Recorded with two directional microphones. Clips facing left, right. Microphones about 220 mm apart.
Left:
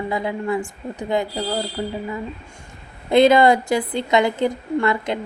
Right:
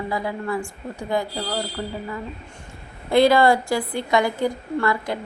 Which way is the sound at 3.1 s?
20° left (ahead or behind).